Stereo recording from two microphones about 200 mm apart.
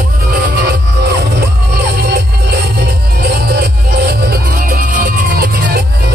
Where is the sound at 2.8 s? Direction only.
50° right (ahead or behind).